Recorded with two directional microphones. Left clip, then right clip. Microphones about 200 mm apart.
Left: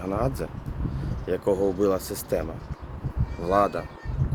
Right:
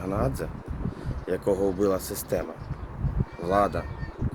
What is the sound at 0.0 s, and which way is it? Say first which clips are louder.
Speech: left 1 dB; 5° left (ahead or behind).